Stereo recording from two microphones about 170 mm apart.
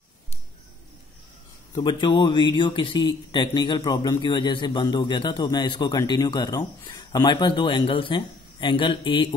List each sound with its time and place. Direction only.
1.8 s speech: 25° left (ahead or behind)